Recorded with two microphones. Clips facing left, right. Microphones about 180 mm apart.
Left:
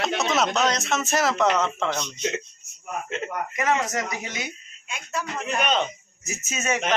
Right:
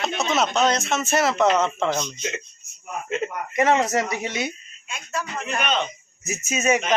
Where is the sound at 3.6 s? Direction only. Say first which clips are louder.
Right 6 dB; 30° right (ahead or behind).